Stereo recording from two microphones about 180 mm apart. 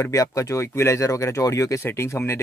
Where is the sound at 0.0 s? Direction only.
20° left (ahead or behind).